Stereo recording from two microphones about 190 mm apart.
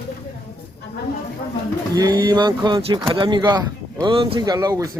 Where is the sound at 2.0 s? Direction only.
20° right (ahead or behind).